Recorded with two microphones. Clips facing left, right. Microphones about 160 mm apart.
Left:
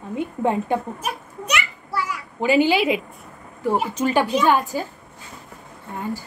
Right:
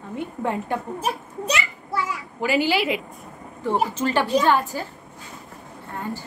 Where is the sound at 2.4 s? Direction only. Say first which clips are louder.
Left 4 dB; 20° left (ahead or behind).